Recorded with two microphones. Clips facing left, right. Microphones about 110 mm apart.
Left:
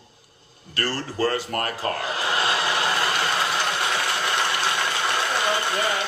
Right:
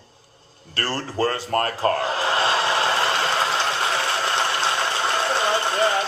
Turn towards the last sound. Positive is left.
turn(degrees=-30)  # may be behind; listen again after turning